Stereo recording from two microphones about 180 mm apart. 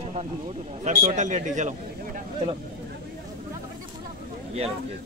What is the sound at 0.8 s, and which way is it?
Speech, 40° right (ahead or behind).